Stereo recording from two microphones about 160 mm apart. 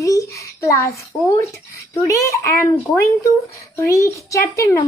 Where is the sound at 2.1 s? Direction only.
20° left (ahead or behind).